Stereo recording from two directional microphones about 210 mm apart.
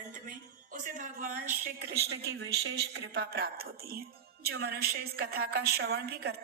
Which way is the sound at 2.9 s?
50° right (ahead or behind).